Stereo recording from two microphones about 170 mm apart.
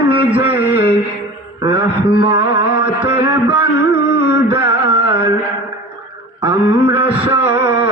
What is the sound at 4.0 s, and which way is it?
Music, 80° left.